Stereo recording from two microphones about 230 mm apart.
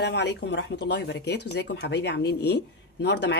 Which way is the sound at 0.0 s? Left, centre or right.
Left.